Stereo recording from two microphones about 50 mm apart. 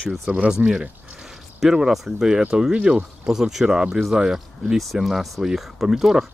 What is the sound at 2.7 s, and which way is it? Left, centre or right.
Speech, centre.